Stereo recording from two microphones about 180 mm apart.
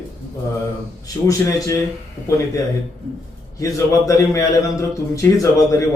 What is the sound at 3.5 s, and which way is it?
A man's voice, 20° left (ahead or behind).